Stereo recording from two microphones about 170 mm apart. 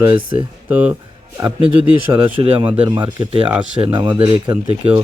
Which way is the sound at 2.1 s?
30° right (ahead or behind).